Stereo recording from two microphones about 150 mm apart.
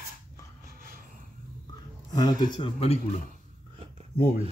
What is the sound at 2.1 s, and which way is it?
Speech, 25° left (ahead or behind).